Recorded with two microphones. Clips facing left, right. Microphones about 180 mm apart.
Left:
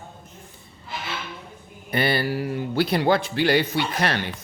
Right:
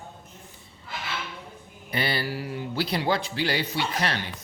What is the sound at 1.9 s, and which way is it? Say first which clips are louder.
Speech: left 5 dB; 55° left (ahead or behind).